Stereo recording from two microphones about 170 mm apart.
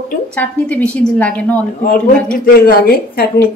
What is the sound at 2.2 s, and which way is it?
Speech, 60° left (ahead or behind).